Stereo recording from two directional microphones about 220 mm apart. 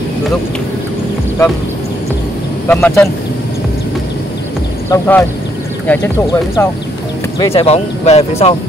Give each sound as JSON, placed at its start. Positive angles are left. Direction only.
{"t": 2.7, "sound": "speech", "side_deg": 10}
{"t": 4.8, "sound": "speech", "side_deg": 10}
{"t": 7.5, "sound": "speech", "side_deg": 30}